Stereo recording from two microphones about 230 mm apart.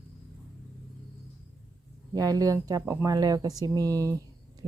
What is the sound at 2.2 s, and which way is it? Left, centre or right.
A woman's voice, centre.